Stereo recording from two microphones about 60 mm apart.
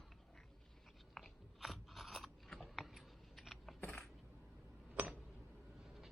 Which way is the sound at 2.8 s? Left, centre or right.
Centre.